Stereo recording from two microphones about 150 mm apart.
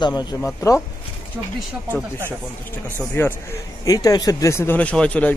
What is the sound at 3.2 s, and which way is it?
Speech, 15° left (ahead or behind).